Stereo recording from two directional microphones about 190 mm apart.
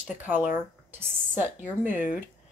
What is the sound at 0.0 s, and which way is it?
Speech, 10° right (ahead or behind).